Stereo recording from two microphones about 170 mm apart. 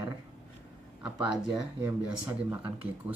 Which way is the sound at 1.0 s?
5° right (ahead or behind).